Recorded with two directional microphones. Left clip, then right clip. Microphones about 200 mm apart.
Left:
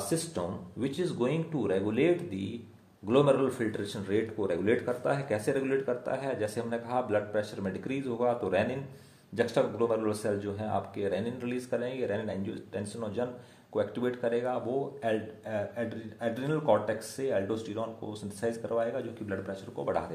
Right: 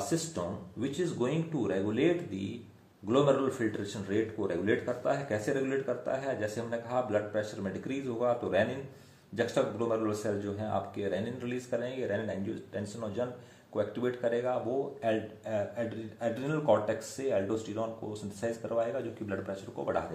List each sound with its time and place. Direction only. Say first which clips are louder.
0.1 s a man's voice: left 1 dB; 35° left (ahead or behind)